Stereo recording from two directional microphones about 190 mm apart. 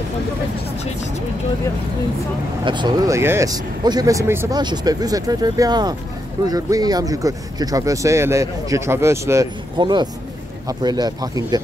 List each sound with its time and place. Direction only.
2.6 s speech: 25° right (ahead or behind)